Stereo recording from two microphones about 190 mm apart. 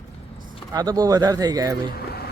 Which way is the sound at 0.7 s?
20° right (ahead or behind).